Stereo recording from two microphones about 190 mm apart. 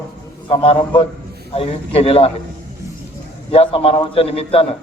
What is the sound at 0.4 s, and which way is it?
A man's voice, 30° left (ahead or behind).